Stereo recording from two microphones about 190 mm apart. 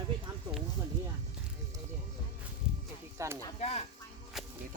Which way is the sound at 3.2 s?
15° right (ahead or behind).